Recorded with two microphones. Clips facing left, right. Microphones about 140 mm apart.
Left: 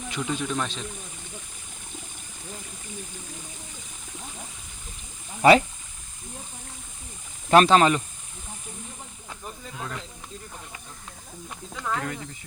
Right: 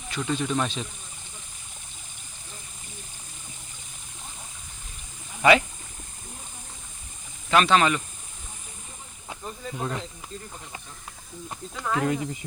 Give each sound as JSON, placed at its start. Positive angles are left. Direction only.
{"t": 0.1, "sound": "speech", "side_deg": 5}
{"t": 5.4, "sound": "speech", "side_deg": 35}
{"t": 7.5, "sound": "speech", "side_deg": 35}
{"t": 9.7, "sound": "speech", "side_deg": -25}
{"t": 11.8, "sound": "speech", "side_deg": -5}